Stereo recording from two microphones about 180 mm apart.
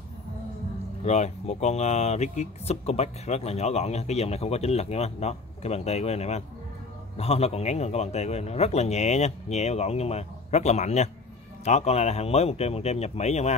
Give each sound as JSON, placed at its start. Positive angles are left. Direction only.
{"t": 1.0, "sound": "speech", "side_deg": 40}